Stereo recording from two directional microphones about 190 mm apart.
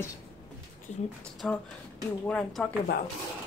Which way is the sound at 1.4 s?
5° left (ahead or behind).